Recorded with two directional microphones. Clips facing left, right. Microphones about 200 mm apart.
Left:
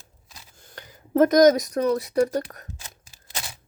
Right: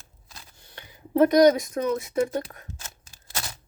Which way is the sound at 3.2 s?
15° left (ahead or behind).